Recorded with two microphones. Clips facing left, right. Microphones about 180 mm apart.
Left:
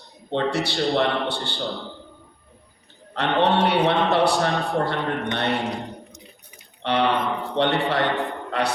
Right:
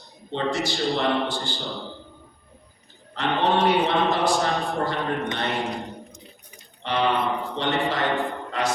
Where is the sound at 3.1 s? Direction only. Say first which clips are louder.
Left 2 dB; 65° left (ahead or behind).